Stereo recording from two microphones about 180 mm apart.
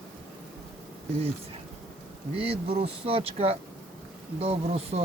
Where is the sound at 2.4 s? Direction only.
35° right (ahead or behind).